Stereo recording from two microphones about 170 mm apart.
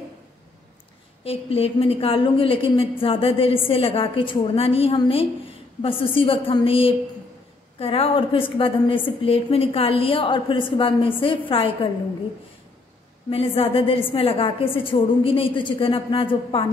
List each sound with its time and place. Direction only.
1.2 s a woman's voice: 35° left (ahead or behind)
13.3 s a woman's voice: 35° left (ahead or behind)